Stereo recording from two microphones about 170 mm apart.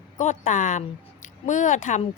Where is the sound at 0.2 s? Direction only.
45° left (ahead or behind).